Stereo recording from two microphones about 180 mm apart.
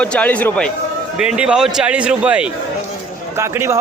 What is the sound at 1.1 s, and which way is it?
A man's voice, 5° right (ahead or behind).